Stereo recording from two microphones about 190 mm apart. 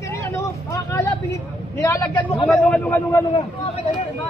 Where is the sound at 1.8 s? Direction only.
20° left (ahead or behind).